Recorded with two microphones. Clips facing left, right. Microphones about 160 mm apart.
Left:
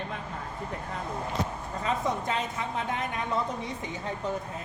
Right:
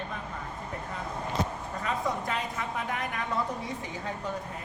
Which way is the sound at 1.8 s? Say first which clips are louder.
Left 2 dB; 20° left (ahead or behind).